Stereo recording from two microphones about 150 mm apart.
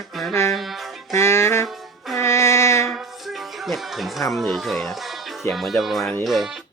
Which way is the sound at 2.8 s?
Centre (ahead or behind).